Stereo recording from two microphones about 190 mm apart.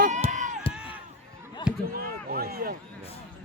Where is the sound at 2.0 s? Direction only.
55° right (ahead or behind).